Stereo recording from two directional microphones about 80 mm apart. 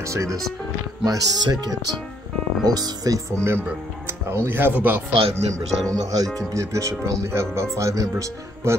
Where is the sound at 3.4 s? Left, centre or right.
Right.